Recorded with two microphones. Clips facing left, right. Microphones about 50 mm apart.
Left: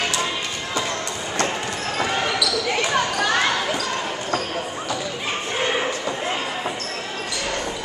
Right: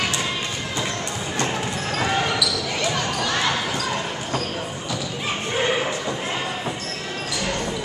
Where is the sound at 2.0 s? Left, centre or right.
Centre.